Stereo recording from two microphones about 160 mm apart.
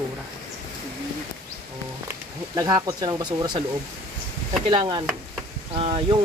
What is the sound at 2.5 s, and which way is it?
Speech, 25° right (ahead or behind).